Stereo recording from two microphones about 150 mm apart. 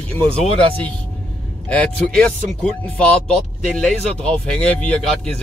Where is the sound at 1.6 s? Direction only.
5° left (ahead or behind).